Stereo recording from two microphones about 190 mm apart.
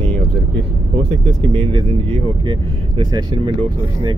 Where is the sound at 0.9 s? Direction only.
25° right (ahead or behind).